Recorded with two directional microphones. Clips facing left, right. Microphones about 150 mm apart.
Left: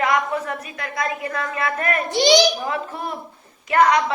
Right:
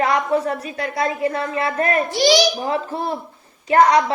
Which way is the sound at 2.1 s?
20° left (ahead or behind).